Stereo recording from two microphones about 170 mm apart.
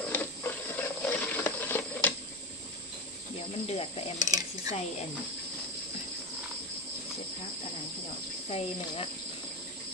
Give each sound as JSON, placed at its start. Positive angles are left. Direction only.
{"t": 0.1, "sound": "a sound", "side_deg": 10}
{"t": 3.6, "sound": "cricket", "side_deg": 35}
{"t": 4.2, "sound": "speech", "side_deg": -20}
{"t": 8.5, "sound": "speech", "side_deg": 35}